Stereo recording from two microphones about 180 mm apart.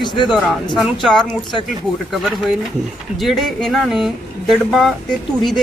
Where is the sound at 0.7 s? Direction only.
25° left (ahead or behind).